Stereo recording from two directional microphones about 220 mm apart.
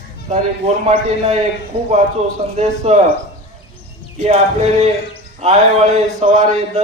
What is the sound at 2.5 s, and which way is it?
Speech, 30° right (ahead or behind).